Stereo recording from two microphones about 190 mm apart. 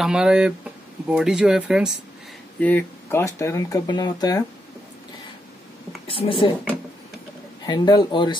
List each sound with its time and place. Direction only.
0.0 s speech: 5° right (ahead or behind)
2.6 s speech: 10° left (ahead or behind)
6.0 s a man's voice: 30° left (ahead or behind)
7.6 s a man's voice: 20° left (ahead or behind)